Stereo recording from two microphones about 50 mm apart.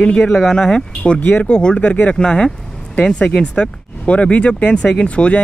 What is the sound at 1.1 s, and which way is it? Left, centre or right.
Speech, left.